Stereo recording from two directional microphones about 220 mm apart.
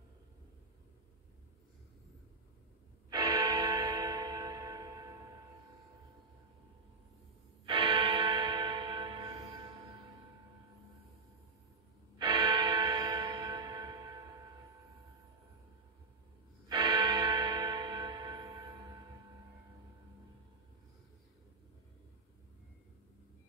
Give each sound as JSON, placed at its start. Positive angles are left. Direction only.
{"t": 3.1, "sound": "music", "side_deg": -15}
{"t": 7.6, "sound": "music", "side_deg": -20}
{"t": 12.2, "sound": "music", "side_deg": -20}
{"t": 16.6, "sound": "church bell", "side_deg": -20}